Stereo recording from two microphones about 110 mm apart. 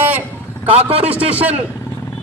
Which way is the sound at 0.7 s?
60° right (ahead or behind).